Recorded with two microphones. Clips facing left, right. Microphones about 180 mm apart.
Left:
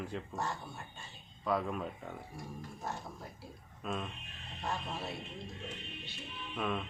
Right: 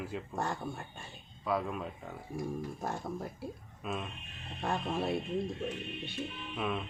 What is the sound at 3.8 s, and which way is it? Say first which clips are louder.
Speech: even; 5° right (ahead or behind).